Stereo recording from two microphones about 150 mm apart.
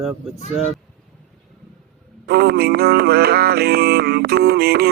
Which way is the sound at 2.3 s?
90° right.